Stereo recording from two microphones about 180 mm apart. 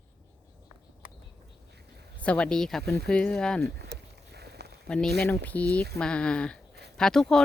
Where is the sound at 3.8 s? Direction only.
65° right (ahead or behind).